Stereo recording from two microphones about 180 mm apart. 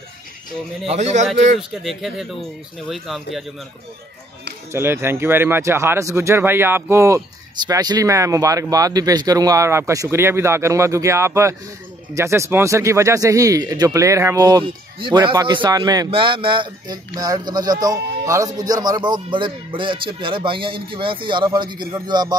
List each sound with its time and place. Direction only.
0.8 s a man's voice: 40° right (ahead or behind)
1.6 s speech: centre (ahead or behind)
4.7 s speech: 15° right (ahead or behind)